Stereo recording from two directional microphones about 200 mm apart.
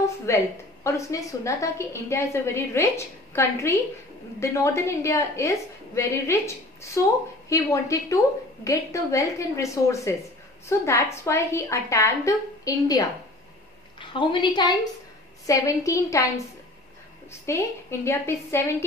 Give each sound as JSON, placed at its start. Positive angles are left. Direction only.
{"t": 0.3, "sound": "a woman's voice", "side_deg": 15}
{"t": 17.3, "sound": "a woman's voice", "side_deg": 15}